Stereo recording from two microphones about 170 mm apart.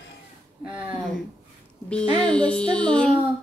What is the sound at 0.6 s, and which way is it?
Speech, 10° right (ahead or behind).